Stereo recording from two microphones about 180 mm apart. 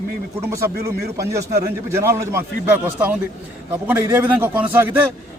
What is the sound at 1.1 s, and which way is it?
A man's voice, 15° right (ahead or behind).